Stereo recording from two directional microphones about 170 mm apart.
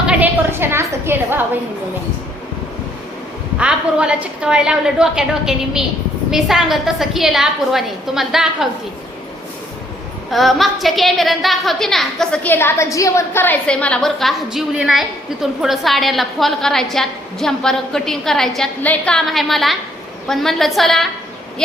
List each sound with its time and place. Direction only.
0.1 s a sound: 10° right (ahead or behind)
3.6 s a woman's voice: 5° right (ahead or behind)
10.3 s a woman's voice: centre (ahead or behind)